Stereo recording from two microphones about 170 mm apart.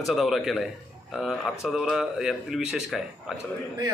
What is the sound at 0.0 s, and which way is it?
A man's voice, centre (ahead or behind).